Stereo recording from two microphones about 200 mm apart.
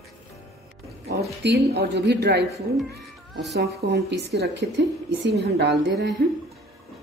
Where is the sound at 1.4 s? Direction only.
55° right (ahead or behind).